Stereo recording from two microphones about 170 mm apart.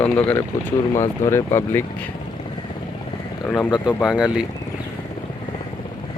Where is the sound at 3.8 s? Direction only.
5° right (ahead or behind).